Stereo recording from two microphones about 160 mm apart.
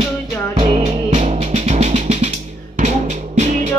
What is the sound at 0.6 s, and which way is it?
Music, 40° right (ahead or behind).